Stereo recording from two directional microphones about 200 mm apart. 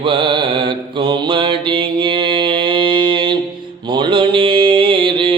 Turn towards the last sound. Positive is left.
turn(degrees=-25)  # may be behind; listen again after turning